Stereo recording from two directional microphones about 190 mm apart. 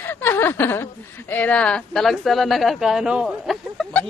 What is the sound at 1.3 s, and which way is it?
Speech, 5° left (ahead or behind).